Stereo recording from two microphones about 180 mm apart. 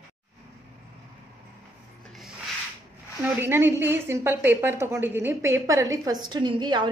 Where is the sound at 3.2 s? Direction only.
10° right (ahead or behind).